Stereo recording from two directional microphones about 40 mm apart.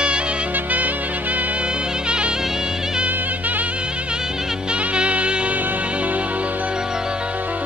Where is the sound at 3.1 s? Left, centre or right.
Right.